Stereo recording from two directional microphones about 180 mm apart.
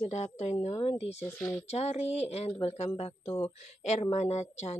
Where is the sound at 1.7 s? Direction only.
35° left (ahead or behind).